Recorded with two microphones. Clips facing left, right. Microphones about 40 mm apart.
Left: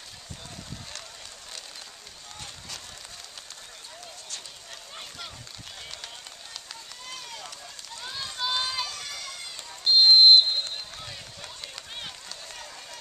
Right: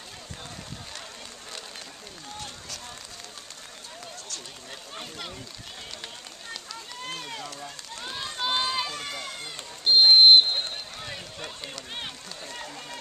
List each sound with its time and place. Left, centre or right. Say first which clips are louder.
7.0 s run: right 5 dB; right
9.8 s a sound: right 1 dB; centre
11.1 s run: right 4 dB; right